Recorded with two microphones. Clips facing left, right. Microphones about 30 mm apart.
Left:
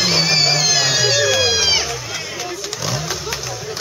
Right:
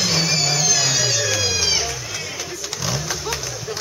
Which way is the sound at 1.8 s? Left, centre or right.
Centre.